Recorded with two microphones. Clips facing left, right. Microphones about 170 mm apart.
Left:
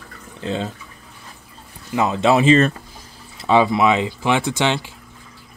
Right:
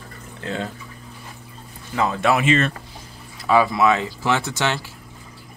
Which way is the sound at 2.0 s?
20° left (ahead or behind).